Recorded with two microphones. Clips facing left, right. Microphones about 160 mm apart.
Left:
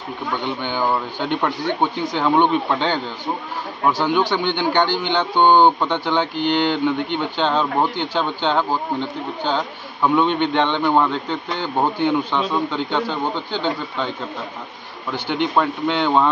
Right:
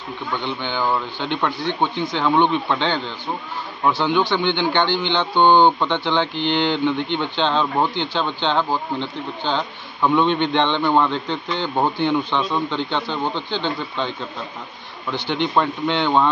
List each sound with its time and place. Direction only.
0.6 s speech: 10° left (ahead or behind)
3.8 s a man's voice: 5° left (ahead or behind)
4.2 s speech: 40° left (ahead or behind)
5.1 s speech: 10° left (ahead or behind)
6.3 s mantra: 45° left (ahead or behind)
6.7 s speech: 5° left (ahead or behind)
15.1 s speech: 10° left (ahead or behind)